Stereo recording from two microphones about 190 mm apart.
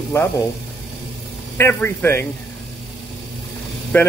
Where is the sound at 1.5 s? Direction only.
10° left (ahead or behind).